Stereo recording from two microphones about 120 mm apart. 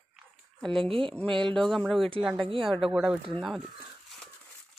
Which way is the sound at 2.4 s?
50° right (ahead or behind).